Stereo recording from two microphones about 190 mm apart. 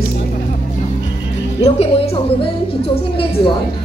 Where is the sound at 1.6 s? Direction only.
30° left (ahead or behind).